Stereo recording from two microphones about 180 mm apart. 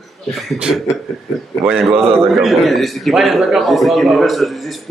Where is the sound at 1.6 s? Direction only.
Centre (ahead or behind).